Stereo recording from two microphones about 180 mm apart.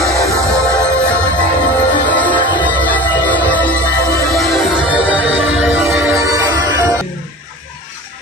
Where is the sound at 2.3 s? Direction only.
25° left (ahead or behind).